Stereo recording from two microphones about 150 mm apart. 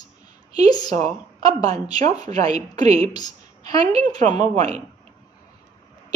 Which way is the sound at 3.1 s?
25° left (ahead or behind).